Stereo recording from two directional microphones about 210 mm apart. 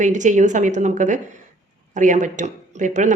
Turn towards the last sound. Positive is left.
turn(degrees=-35)  # may be behind; listen again after turning